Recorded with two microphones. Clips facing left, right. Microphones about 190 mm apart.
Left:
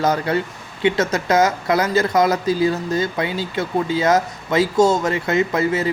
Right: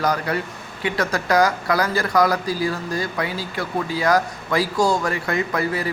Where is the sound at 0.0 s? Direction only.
25° left (ahead or behind).